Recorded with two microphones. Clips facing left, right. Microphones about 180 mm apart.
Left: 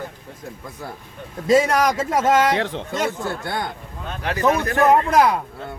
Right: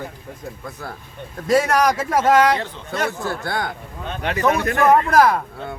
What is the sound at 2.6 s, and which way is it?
Speech, 80° left.